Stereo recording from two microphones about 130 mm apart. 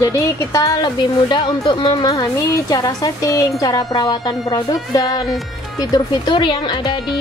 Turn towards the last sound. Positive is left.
turn(degrees=40)  # may be behind; listen again after turning